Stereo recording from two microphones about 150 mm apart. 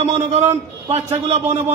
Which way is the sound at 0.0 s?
45° right (ahead or behind).